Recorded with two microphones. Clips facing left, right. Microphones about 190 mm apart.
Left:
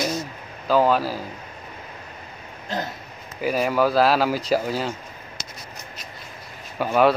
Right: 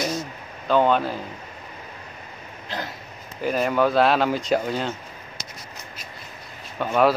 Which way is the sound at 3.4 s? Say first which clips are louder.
Even; 5° left (ahead or behind).